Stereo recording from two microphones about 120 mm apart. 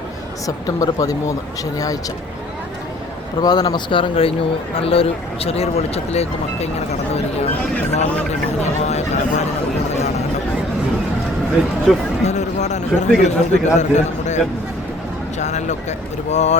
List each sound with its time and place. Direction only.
0.4 s speech: 30° left (ahead or behind)
3.4 s a man's voice: 35° left (ahead or behind); by 7.4 s 65° left (ahead or behind)
8.8 s a man's voice: 70° left (ahead or behind)
12.2 s a man's voice: 70° left (ahead or behind)